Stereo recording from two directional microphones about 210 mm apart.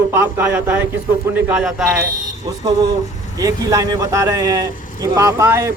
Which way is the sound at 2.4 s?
20° right (ahead or behind).